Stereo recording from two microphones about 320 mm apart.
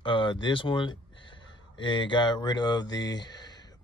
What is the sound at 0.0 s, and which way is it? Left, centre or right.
Speech, centre.